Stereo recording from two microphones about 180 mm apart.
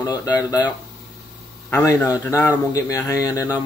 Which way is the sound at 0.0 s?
20° left (ahead or behind).